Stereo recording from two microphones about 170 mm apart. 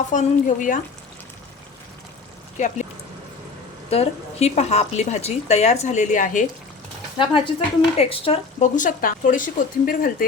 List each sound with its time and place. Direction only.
0.1 s speech: 50° left (ahead or behind)
2.6 s speech: 45° left (ahead or behind)
3.8 s a woman's voice: 35° left (ahead or behind)
7.2 s a woman's voice: 30° left (ahead or behind)
8.7 s speech: 50° left (ahead or behind)